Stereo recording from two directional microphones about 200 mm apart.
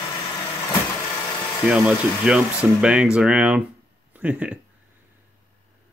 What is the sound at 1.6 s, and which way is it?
Speech, 5° right (ahead or behind).